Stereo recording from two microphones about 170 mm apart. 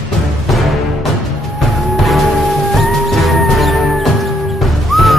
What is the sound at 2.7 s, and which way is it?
Music, centre (ahead or behind).